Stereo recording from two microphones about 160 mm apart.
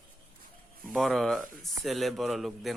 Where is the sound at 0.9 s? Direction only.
Centre (ahead or behind).